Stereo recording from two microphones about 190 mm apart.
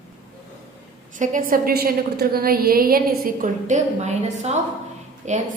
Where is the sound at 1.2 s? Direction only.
45° right (ahead or behind).